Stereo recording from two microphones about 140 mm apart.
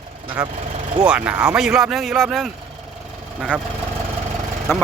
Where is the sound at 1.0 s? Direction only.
10° right (ahead or behind).